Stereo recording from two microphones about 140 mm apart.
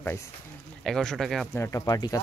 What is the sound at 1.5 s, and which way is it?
Speech, 20° left (ahead or behind).